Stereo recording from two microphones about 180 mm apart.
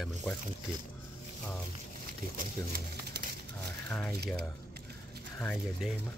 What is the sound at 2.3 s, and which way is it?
Speech, 55° right (ahead or behind).